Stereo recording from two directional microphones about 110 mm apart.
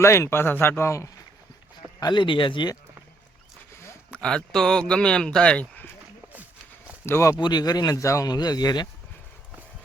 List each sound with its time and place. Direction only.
0.0 s speech: 25° left (ahead or behind)
2.0 s speech: 40° left (ahead or behind)
4.1 s speech: 10° left (ahead or behind)
7.0 s speech: 25° left (ahead or behind)
7.3 s speech: 40° left (ahead or behind)